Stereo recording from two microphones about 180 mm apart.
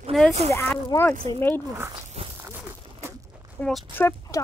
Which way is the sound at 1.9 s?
30° right (ahead or behind).